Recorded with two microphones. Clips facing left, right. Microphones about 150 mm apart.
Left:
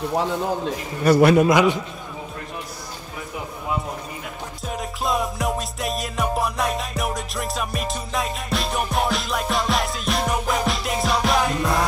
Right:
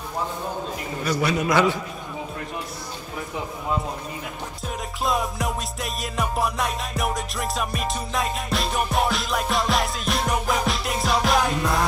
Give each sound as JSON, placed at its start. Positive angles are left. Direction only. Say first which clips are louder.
{"t": 1.0, "sound": "a man's voice", "louder": "left 10 dB", "side_deg": 55}
{"t": 1.5, "sound": "a man's voice", "louder": "left 3 dB", "side_deg": 15}
{"t": 4.6, "sound": "music", "louder": "left 1 dB", "side_deg": 0}